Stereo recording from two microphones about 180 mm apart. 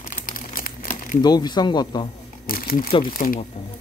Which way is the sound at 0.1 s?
50° left (ahead or behind).